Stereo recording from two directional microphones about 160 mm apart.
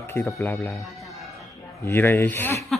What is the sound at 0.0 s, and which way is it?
Speech, 15° left (ahead or behind).